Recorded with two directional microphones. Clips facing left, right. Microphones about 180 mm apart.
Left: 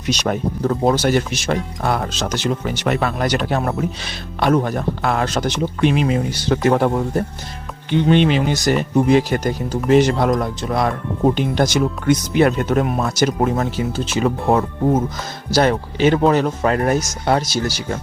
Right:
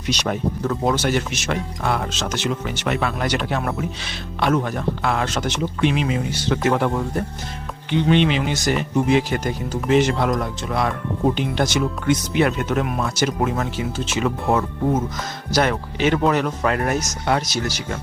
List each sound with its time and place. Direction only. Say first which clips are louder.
0.1 s speech: left 2 dB; 40° left (ahead or behind)